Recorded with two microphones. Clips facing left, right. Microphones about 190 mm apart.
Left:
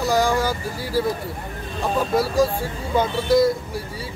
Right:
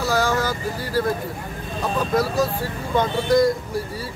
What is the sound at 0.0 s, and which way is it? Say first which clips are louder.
Vehicle: left 2 dB; 15° left (ahead or behind).